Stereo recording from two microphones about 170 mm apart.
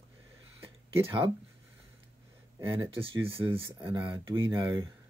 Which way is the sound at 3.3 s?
15° right (ahead or behind).